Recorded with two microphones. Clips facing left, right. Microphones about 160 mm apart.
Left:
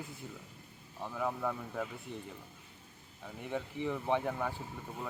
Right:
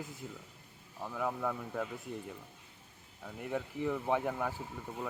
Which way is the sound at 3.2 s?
5° right (ahead or behind).